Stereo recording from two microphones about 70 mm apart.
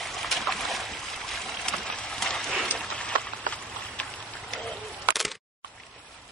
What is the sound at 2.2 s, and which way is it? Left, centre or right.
Clip-clop, centre.